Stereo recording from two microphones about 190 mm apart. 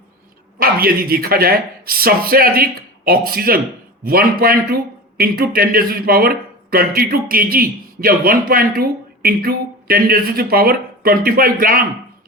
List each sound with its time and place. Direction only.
0.6 s speech: 50° right (ahead or behind)